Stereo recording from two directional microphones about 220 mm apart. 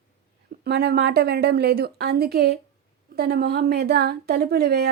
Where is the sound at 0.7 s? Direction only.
50° right (ahead or behind).